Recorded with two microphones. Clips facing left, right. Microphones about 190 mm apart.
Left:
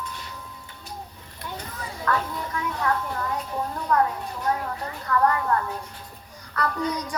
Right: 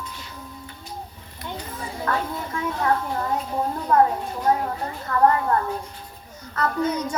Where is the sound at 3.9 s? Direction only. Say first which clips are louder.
Right 4 dB; 25° right (ahead or behind).